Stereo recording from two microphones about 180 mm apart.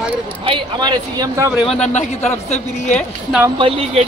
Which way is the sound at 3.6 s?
30° right (ahead or behind).